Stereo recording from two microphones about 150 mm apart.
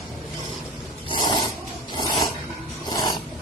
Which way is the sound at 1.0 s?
30° left (ahead or behind).